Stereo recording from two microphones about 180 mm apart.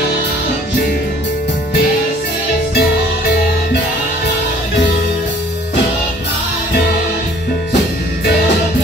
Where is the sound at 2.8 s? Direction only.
60° left (ahead or behind).